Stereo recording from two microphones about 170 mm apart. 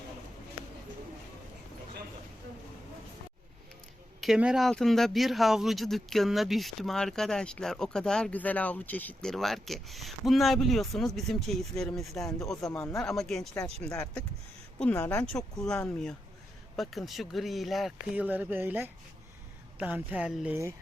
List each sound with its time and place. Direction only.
4.2 s speech: 5° right (ahead or behind)
12.7 s speech: 15° left (ahead or behind)
13.0 s speech: centre (ahead or behind)
14.9 s speech: 15° left (ahead or behind)
15.2 s speech: 5° left (ahead or behind)